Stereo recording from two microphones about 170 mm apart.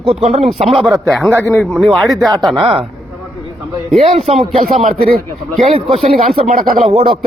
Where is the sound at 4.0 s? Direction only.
35° right (ahead or behind).